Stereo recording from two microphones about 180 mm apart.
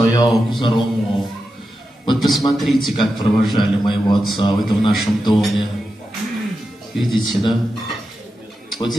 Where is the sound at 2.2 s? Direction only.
Centre (ahead or behind).